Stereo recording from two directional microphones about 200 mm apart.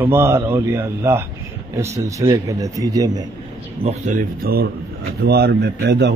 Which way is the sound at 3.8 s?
35° right (ahead or behind).